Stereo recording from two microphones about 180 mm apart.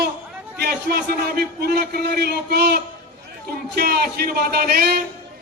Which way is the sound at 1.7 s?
60° right (ahead or behind).